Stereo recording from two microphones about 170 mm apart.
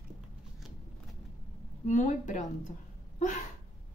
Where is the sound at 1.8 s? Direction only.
45° left (ahead or behind).